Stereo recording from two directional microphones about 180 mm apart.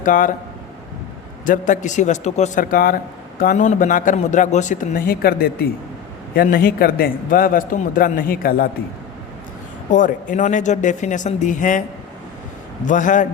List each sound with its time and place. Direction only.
0.0 s speech: 50° left (ahead or behind)
1.5 s a man's voice: 45° left (ahead or behind)
9.9 s a man's voice: 45° left (ahead or behind)
12.8 s a man's voice: 45° left (ahead or behind)